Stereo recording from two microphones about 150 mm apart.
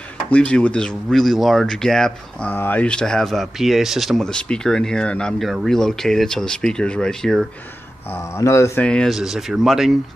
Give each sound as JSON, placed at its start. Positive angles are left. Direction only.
{"t": 0.3, "sound": "speech", "side_deg": 5}
{"t": 8.1, "sound": "speech", "side_deg": 15}
{"t": 8.8, "sound": "speech", "side_deg": 5}